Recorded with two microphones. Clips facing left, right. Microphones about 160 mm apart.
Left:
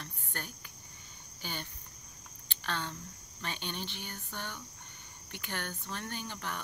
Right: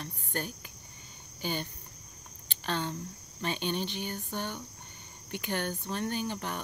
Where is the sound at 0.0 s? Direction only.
20° right (ahead or behind).